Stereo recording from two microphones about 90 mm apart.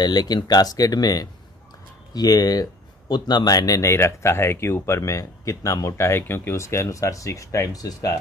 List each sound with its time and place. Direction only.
0.0 s speech: 50° left (ahead or behind)